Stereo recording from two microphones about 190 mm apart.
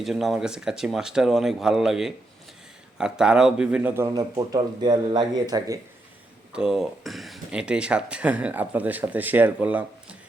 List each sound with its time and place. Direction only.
0.0 s speech: centre (ahead or behind); by 5.8 s 20° right (ahead or behind)
6.5 s speech: 5° right (ahead or behind)